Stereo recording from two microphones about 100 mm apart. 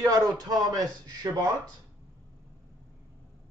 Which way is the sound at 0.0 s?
40° right (ahead or behind).